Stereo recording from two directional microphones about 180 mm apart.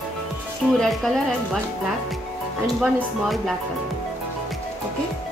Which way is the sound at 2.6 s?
Centre (ahead or behind).